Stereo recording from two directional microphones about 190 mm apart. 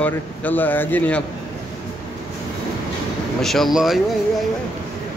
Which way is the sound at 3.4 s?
Centre (ahead or behind).